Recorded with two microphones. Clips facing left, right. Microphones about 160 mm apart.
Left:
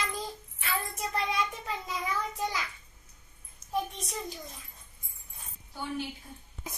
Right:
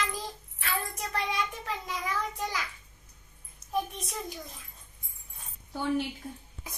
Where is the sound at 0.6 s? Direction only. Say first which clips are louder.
Even; centre (ahead or behind).